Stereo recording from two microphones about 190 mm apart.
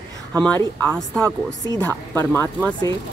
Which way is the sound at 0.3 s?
5° left (ahead or behind).